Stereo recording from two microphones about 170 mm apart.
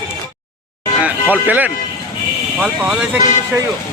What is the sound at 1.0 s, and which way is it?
Speech, 10° right (ahead or behind).